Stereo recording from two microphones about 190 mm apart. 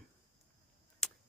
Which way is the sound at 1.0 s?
5° left (ahead or behind).